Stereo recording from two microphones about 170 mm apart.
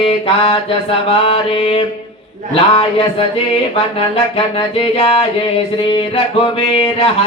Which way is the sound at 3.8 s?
35° left (ahead or behind).